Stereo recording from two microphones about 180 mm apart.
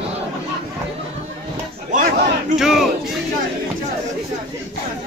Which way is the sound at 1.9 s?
45° right (ahead or behind).